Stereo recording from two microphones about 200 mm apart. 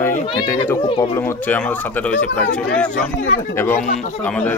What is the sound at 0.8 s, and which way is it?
Speech, 25° left (ahead or behind).